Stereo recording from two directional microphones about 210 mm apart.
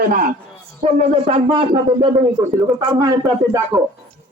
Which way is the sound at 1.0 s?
25° right (ahead or behind).